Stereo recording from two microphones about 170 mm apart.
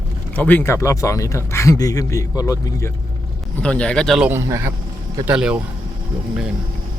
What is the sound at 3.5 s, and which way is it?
Speech, 5° left (ahead or behind).